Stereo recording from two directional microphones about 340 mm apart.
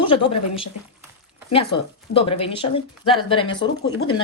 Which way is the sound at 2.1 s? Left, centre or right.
Centre.